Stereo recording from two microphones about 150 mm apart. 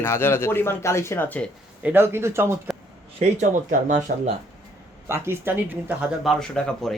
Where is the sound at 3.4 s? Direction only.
50° right (ahead or behind).